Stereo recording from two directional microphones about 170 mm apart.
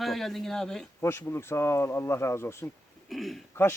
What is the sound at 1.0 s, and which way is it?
Speech, 15° left (ahead or behind).